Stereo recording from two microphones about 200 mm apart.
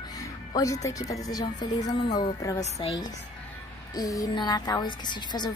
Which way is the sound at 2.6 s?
30° left (ahead or behind).